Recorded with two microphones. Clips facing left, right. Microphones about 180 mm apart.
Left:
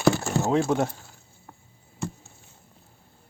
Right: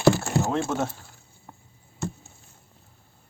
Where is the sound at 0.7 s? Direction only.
15° left (ahead or behind).